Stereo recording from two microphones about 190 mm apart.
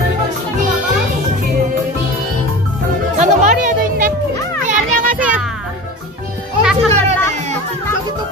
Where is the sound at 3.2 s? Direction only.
40° right (ahead or behind).